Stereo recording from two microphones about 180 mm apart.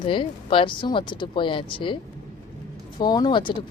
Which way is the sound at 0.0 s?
30° left (ahead or behind).